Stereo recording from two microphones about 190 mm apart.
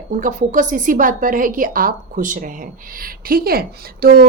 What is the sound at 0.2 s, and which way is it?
A woman's voice, 45° right (ahead or behind).